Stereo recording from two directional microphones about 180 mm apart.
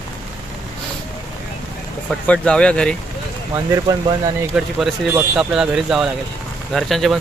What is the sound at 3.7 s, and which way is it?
Speech, 20° right (ahead or behind).